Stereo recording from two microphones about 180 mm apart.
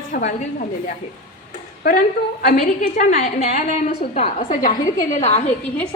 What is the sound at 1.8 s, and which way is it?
A woman's voice, 55° left (ahead or behind).